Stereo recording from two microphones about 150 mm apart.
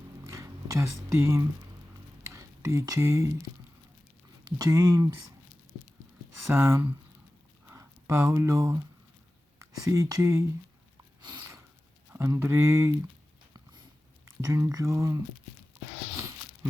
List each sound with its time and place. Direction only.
0.3 s speech: 20° right (ahead or behind)
4.4 s speech: 25° right (ahead or behind)
6.5 s speech: 15° right (ahead or behind)
11.2 s a sound: 30° right (ahead or behind)
12.1 s speech: 20° right (ahead or behind)
14.3 s speech: 20° right (ahead or behind)